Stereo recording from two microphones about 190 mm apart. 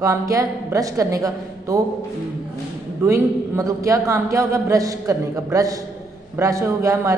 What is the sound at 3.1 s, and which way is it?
A woman's voice, 15° right (ahead or behind).